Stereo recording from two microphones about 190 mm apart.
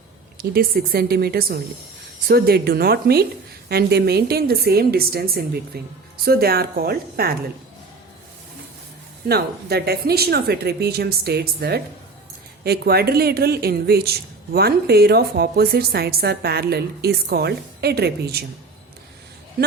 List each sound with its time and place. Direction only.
0.3 s a woman's voice: 50° right (ahead or behind)
9.3 s speech: 55° right (ahead or behind)
19.6 s a woman's voice: 50° right (ahead or behind)